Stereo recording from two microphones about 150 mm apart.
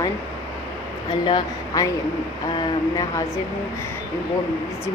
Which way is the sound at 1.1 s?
30° left (ahead or behind).